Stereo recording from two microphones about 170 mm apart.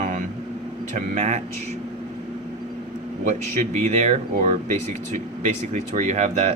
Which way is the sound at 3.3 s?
40° right (ahead or behind).